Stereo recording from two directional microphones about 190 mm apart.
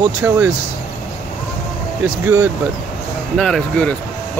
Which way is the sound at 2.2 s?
10° right (ahead or behind).